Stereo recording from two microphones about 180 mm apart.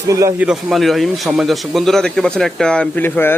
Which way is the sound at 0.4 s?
Centre (ahead or behind).